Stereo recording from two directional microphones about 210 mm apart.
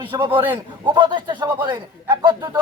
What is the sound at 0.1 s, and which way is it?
A man's voice, 20° right (ahead or behind).